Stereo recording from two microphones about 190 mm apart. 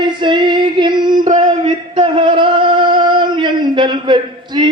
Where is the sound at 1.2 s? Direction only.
40° right (ahead or behind).